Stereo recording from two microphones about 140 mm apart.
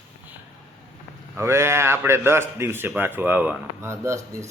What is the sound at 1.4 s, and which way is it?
Speech, 20° right (ahead or behind).